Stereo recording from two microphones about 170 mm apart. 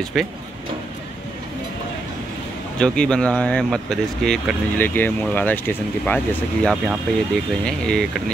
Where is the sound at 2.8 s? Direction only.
5° left (ahead or behind).